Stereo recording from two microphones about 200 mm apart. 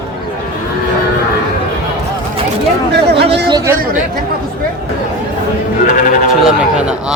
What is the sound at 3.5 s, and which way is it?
Speech, 15° right (ahead or behind).